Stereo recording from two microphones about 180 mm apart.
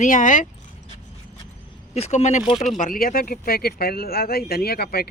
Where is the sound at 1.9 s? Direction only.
35° left (ahead or behind).